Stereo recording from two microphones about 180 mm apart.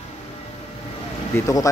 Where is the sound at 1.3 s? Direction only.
15° left (ahead or behind).